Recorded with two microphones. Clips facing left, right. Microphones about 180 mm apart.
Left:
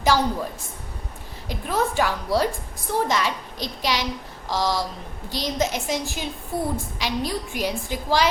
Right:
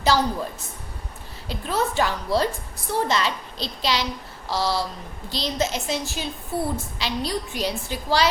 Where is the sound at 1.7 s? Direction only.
10° left (ahead or behind).